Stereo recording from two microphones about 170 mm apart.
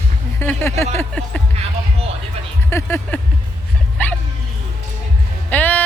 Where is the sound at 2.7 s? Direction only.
15° left (ahead or behind).